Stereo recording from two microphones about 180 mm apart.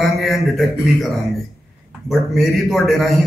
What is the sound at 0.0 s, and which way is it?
A man's voice, centre (ahead or behind).